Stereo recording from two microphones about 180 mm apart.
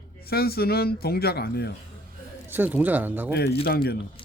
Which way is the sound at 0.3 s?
60° left (ahead or behind).